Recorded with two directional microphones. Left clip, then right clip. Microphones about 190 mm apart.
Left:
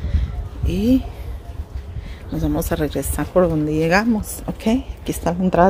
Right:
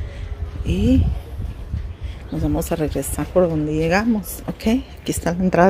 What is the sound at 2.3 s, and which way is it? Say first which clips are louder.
Speech: even; 5° right (ahead or behind).